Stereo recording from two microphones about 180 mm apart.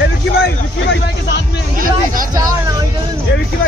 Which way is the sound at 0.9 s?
70° left (ahead or behind).